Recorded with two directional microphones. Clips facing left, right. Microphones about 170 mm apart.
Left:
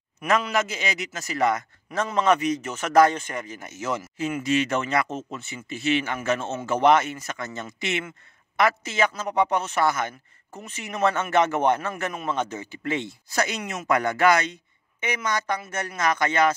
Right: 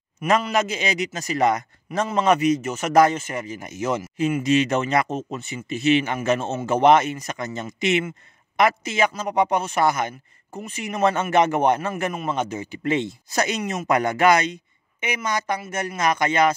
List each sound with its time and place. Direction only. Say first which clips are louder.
0.2 s a man's voice: right 3 dB; 15° right (ahead or behind)